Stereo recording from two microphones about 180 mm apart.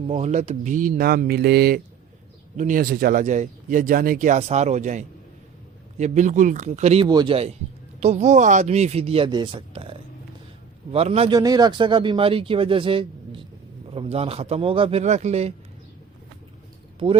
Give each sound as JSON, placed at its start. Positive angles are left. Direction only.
{"t": 0.1, "sound": "speech", "side_deg": -40}
{"t": 2.6, "sound": "speech", "side_deg": -50}
{"t": 10.9, "sound": "speech", "side_deg": -35}
{"t": 11.3, "sound": "speech", "side_deg": -20}